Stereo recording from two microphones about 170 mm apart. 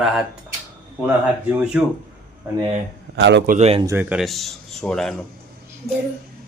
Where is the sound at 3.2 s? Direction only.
90° right.